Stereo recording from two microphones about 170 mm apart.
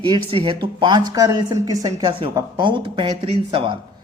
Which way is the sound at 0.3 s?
30° right (ahead or behind).